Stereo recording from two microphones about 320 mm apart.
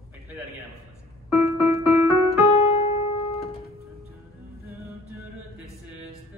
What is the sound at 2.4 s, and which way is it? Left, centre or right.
Piano, centre.